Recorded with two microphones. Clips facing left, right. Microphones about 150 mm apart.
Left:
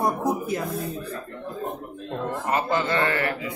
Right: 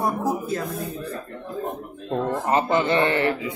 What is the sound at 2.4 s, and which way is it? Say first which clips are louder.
A man's voice: right 2 dB; 25° right (ahead or behind).